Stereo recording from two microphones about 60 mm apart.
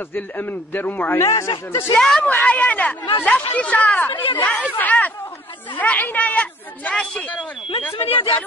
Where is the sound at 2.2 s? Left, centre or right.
Left.